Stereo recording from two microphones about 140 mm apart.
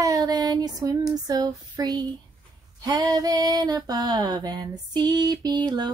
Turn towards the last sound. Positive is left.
turn(degrees=-30)  # may be behind; listen again after turning